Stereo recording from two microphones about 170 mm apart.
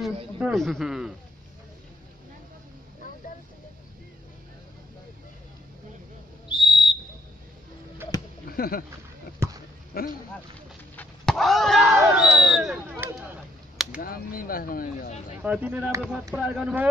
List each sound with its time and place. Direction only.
0.4 s a man's voice: centre (ahead or behind)
6.5 s whistle: 30° left (ahead or behind)
8.5 s speech: 60° left (ahead or behind)
9.4 s basketball bounce: 15° right (ahead or behind)
9.9 s speech: 65° left (ahead or behind)
11.0 s a sound: centre (ahead or behind)
14.0 s speech: 60° left (ahead or behind)
15.4 s a man's voice: 10° right (ahead or behind)